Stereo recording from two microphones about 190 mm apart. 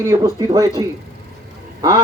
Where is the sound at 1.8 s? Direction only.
20° right (ahead or behind).